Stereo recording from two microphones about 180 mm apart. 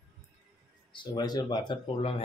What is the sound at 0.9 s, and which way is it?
Speech, 25° left (ahead or behind).